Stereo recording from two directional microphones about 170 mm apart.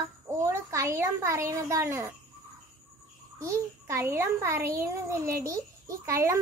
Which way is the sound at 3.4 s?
15° right (ahead or behind).